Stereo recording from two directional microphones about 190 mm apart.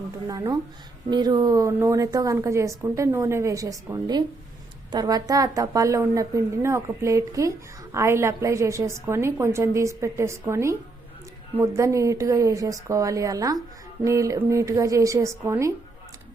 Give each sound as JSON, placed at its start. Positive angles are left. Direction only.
{"t": 0.3, "sound": "a woman's voice", "side_deg": -20}